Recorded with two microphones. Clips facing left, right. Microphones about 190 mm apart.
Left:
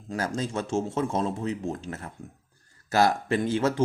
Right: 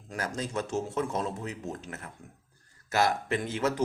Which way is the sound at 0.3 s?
25° left (ahead or behind).